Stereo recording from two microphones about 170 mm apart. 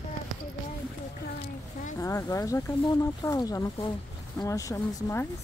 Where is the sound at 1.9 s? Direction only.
15° left (ahead or behind).